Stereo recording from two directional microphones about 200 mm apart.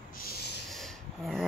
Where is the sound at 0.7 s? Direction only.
Centre (ahead or behind).